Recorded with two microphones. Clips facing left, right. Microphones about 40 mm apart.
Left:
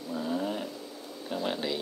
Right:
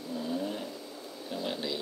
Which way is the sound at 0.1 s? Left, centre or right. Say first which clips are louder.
Left 3 dB; left.